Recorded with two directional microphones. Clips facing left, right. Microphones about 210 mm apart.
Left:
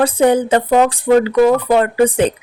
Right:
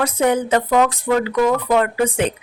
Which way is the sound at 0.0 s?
30° left (ahead or behind).